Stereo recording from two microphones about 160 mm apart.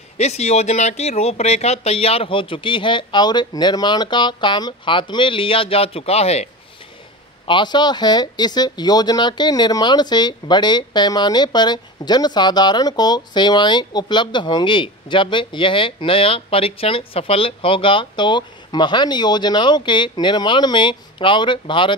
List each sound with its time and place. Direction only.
0.2 s speech: 40° left (ahead or behind)
7.4 s speech: 30° left (ahead or behind)